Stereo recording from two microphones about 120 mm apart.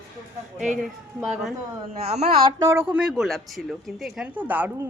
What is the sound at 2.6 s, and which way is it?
Speech, 25° right (ahead or behind).